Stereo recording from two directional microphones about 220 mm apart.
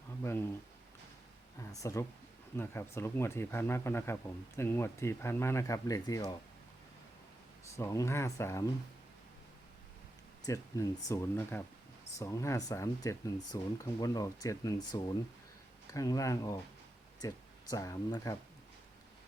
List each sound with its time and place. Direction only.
0.2 s speech: 10° left (ahead or behind)
1.7 s speech: 15° left (ahead or behind)
7.8 s speech: 15° left (ahead or behind)
10.4 s speech: 15° left (ahead or behind)